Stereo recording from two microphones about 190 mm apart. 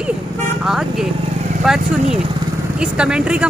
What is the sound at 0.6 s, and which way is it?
Speech, 5° right (ahead or behind).